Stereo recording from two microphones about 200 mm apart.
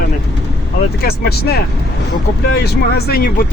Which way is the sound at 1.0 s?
50° left (ahead or behind).